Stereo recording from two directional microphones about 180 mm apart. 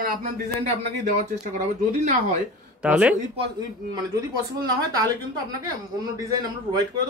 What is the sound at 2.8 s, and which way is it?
Speech, 5° right (ahead or behind).